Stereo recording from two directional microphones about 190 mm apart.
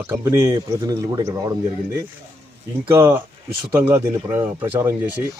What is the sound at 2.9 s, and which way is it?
Speech, 10° right (ahead or behind).